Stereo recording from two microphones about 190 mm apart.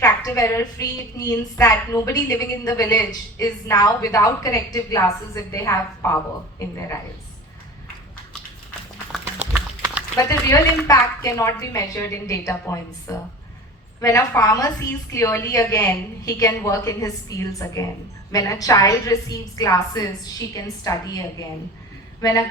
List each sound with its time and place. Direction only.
0.0 s a woman's voice: 15° left (ahead or behind)
9.5 s a sound: 10° right (ahead or behind)
10.2 s a woman's voice: 15° left (ahead or behind)